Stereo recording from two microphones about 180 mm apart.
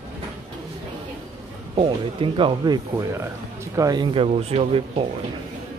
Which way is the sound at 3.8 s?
25° right (ahead or behind).